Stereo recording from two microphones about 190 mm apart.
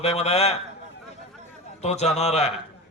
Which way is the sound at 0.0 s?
35° left (ahead or behind).